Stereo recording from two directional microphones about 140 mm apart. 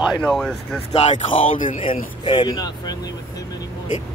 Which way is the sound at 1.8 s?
35° left (ahead or behind).